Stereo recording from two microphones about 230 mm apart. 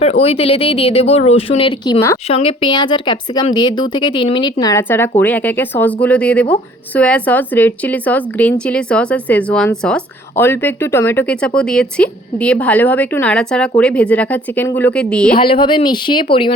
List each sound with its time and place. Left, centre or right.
0.0 s a woman's voice: left; by 15.3 s centre
15.4 s speech: left